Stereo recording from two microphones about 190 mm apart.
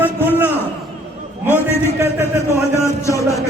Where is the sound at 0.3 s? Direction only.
10° right (ahead or behind).